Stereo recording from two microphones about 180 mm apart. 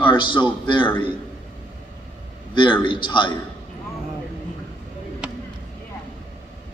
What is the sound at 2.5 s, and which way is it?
Speech, 25° left (ahead or behind).